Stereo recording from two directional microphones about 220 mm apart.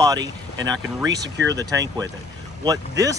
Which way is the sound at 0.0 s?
15° right (ahead or behind).